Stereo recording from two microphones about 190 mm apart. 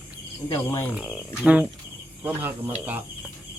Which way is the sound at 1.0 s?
5° right (ahead or behind).